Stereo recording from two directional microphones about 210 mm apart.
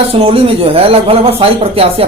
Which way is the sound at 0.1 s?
25° right (ahead or behind).